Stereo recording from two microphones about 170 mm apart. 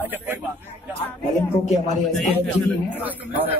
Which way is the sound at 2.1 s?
Centre (ahead or behind).